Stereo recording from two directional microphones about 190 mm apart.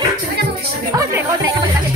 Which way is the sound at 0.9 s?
15° right (ahead or behind).